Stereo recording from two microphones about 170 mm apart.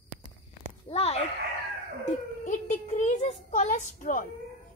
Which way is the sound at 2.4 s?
45° left (ahead or behind).